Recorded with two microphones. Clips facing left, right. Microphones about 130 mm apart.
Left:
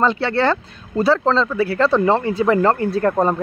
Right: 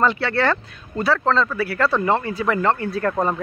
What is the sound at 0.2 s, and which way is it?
Speech, 30° left (ahead or behind).